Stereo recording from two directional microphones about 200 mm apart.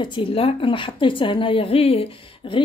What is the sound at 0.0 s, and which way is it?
Speech, 25° left (ahead or behind).